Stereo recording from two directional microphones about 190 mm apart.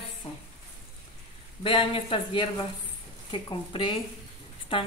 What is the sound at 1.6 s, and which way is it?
A woman's voice, 25° left (ahead or behind).